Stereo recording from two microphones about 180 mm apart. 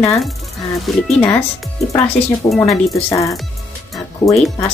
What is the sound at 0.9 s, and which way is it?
Speech, centre (ahead or behind).